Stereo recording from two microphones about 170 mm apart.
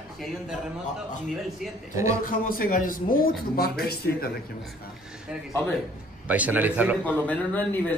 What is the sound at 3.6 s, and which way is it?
Speech, 65° left (ahead or behind).